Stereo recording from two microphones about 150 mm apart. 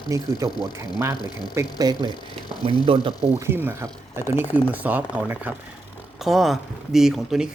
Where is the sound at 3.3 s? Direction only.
15° right (ahead or behind).